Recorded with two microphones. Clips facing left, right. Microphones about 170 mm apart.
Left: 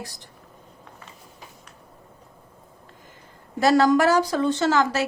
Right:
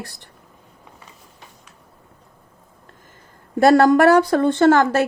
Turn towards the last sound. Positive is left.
turn(degrees=-55)  # may be behind; listen again after turning